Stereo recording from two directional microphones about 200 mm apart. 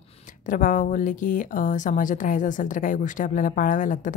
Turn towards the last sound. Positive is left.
turn(degrees=40)  # may be behind; listen again after turning